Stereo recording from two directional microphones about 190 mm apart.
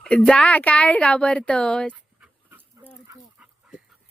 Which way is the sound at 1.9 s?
10° right (ahead or behind).